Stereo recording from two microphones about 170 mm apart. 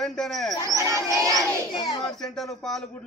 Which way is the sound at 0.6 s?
20° right (ahead or behind).